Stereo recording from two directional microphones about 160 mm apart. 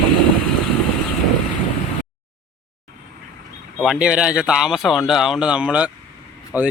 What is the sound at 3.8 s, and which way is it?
Speech, 5° right (ahead or behind).